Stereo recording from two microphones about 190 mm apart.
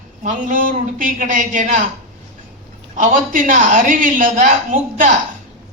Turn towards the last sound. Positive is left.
turn(degrees=-40)  # may be behind; listen again after turning